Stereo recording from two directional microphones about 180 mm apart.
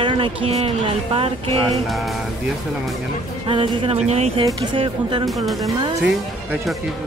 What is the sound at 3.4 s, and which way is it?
Music, 30° right (ahead or behind).